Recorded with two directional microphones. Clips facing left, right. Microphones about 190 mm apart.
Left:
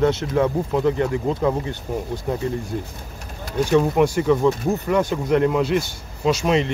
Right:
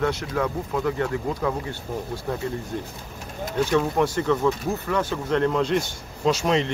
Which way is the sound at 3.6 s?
15° left (ahead or behind).